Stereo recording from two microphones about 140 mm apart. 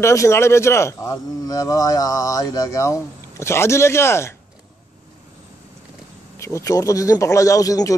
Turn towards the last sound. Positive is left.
turn(degrees=25)  # may be behind; listen again after turning